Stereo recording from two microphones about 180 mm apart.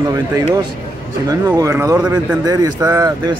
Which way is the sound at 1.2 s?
20° right (ahead or behind).